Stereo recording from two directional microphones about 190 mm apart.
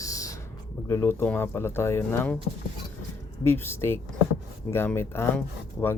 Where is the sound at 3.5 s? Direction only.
10° left (ahead or behind).